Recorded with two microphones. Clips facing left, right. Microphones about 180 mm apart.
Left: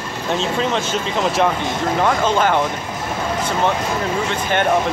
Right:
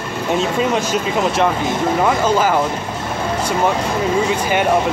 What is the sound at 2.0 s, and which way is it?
Speech, 5° right (ahead or behind).